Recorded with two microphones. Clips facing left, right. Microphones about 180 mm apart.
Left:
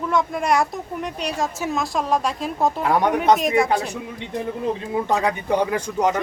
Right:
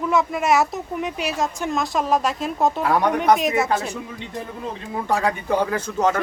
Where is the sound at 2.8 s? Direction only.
20° left (ahead or behind).